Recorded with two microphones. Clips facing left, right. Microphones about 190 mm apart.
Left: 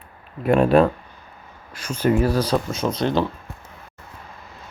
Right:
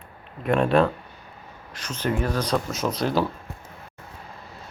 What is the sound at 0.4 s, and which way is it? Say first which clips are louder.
Speech: left 4 dB; centre (ahead or behind).